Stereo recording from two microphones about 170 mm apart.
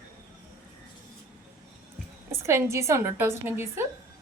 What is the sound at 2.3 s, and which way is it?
A woman's voice, 15° right (ahead or behind).